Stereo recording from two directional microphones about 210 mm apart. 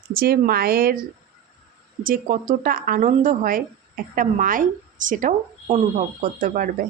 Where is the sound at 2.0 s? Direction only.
40° right (ahead or behind).